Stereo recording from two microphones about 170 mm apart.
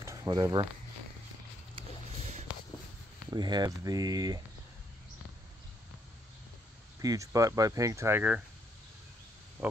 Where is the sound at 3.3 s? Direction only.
25° right (ahead or behind).